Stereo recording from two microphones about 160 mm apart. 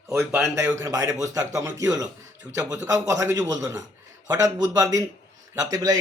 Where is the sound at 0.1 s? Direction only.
15° right (ahead or behind).